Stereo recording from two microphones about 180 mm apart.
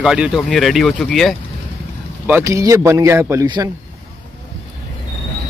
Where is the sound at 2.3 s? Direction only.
15° right (ahead or behind).